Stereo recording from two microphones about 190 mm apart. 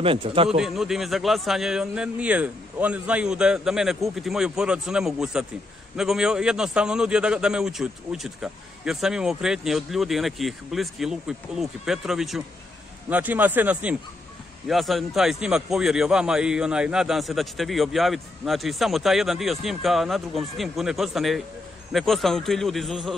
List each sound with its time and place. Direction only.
0.0 s a man's voice: 30° right (ahead or behind)
0.6 s a man's voice: centre (ahead or behind)